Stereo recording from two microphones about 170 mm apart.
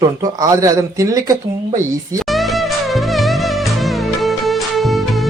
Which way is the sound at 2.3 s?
Centre (ahead or behind).